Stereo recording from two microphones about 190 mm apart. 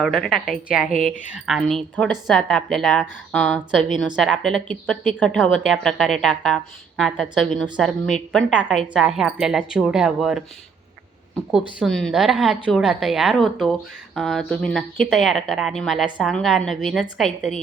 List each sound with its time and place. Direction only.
0.0 s a woman's voice: centre (ahead or behind)
0.9 s speech: 45° left (ahead or behind)
1.3 s a woman's voice: centre (ahead or behind)